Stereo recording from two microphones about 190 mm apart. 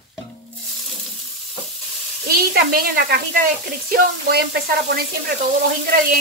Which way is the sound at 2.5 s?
50° right (ahead or behind).